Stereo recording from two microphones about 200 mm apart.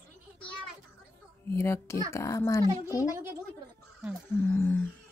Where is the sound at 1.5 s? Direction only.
15° left (ahead or behind).